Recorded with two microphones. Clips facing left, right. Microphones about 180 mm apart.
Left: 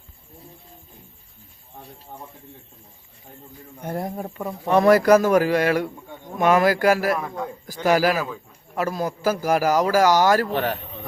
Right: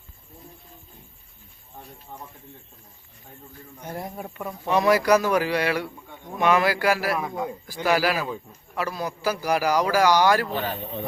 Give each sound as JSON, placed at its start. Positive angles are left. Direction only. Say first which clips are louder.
{"t": 3.8, "sound": "a man's voice", "louder": "left 6 dB", "side_deg": 50}
{"t": 7.2, "sound": "a man's voice", "louder": "even", "side_deg": -5}
{"t": 7.9, "sound": "a man's voice", "louder": "left 3 dB", "side_deg": 45}
{"t": 10.5, "sound": "speech", "louder": "left 4 dB", "side_deg": 75}